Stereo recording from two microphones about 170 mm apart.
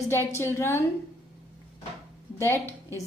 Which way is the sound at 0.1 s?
15° left (ahead or behind).